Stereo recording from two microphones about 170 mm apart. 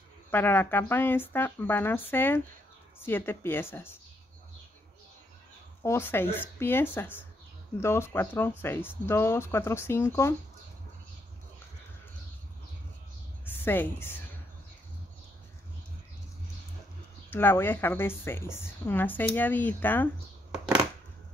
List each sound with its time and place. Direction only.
0.3 s a woman's voice: 10° left (ahead or behind)
5.8 s a woman's voice: 15° left (ahead or behind)
13.5 s a woman's voice: 10° left (ahead or behind)
17.3 s a woman's voice: 10° left (ahead or behind)